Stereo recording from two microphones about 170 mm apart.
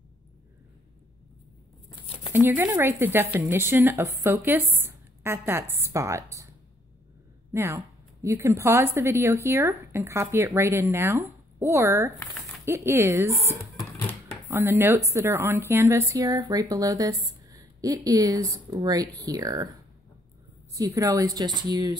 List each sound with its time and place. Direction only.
2.3 s a woman's voice: 10° right (ahead or behind)
7.5 s a woman's voice: 15° right (ahead or behind)
14.5 s a woman's voice: 15° right (ahead or behind)